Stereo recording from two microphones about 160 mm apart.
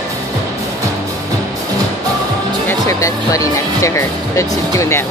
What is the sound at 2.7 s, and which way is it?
Speech, 20° left (ahead or behind).